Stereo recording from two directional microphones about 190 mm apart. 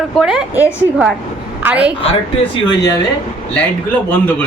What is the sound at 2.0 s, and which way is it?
Speech, 30° left (ahead or behind).